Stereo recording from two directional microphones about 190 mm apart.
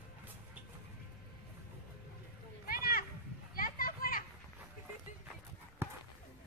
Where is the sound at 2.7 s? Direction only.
50° left (ahead or behind).